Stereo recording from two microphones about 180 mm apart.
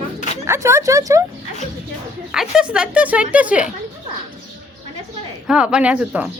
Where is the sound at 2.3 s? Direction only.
5° right (ahead or behind).